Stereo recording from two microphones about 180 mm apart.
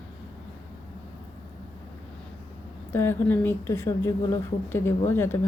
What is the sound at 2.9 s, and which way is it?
A woman's voice, 10° left (ahead or behind).